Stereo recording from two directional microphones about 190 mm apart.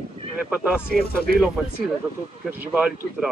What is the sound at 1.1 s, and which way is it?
Speech, 55° left (ahead or behind).